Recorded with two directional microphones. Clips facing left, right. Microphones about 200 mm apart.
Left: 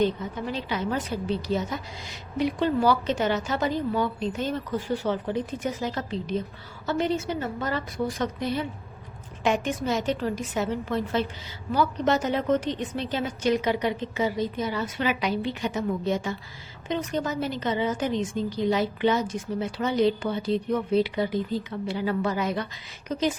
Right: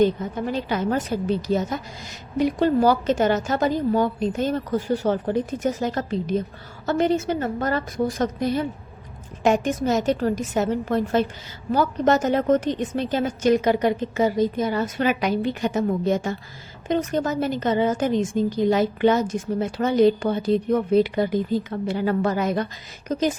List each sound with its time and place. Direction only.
0.0 s a woman's voice: 50° right (ahead or behind)